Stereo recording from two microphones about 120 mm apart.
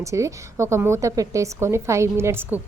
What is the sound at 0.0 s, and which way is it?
A woman's voice, 25° right (ahead or behind).